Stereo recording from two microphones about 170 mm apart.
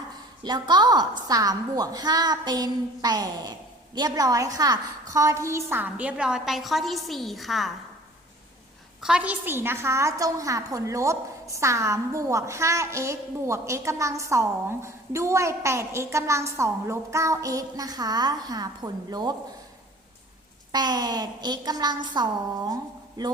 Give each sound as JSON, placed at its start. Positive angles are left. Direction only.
{"t": 0.4, "sound": "a woman's voice", "side_deg": -25}
{"t": 9.0, "sound": "a woman's voice", "side_deg": -5}
{"t": 20.7, "sound": "a woman's voice", "side_deg": -25}
{"t": 22.7, "sound": "a sound", "side_deg": -25}